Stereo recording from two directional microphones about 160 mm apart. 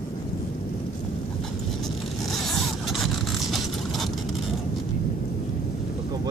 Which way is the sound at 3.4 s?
Centre (ahead or behind).